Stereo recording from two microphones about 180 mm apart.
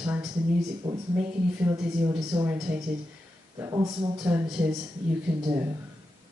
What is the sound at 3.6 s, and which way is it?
Speech, 20° right (ahead or behind).